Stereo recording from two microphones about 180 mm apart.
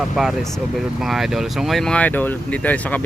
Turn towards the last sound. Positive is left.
turn(degrees=10)  # may be behind; listen again after turning